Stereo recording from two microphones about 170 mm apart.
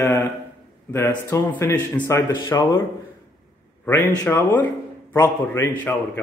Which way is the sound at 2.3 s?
20° left (ahead or behind).